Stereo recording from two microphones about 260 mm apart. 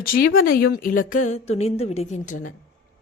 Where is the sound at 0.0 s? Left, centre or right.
Left.